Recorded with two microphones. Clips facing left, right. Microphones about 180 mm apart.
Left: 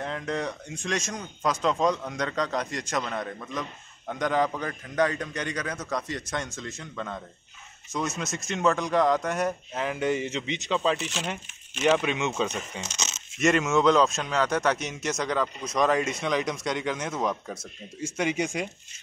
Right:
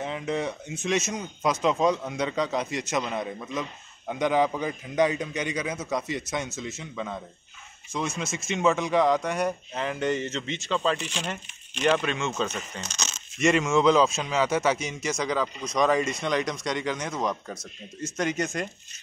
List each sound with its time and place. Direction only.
0.0 s a man's voice: 5° right (ahead or behind)
12.8 s a sound: 20° left (ahead or behind)
13.4 s speech: centre (ahead or behind)